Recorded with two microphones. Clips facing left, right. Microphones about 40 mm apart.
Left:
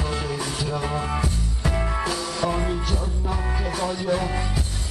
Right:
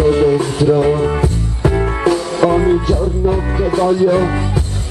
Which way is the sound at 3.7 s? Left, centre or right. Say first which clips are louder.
Right 13 dB; right.